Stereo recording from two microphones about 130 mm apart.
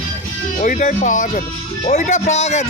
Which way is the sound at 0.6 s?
80° left.